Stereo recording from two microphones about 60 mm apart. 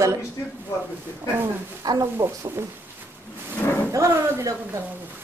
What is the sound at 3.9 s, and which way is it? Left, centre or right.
Speech, right.